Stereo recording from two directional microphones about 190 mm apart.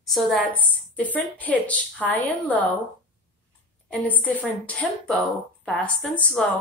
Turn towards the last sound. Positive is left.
turn(degrees=5)  # may be behind; listen again after turning